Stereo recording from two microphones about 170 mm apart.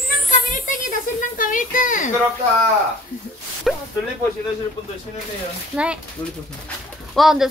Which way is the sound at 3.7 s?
Centre (ahead or behind).